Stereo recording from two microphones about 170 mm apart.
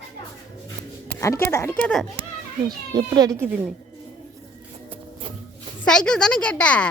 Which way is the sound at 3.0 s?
20° right (ahead or behind).